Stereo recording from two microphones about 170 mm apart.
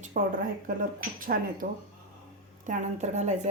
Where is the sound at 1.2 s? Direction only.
55° right (ahead or behind).